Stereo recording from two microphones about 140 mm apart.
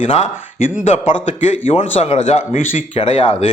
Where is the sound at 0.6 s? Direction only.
60° left (ahead or behind).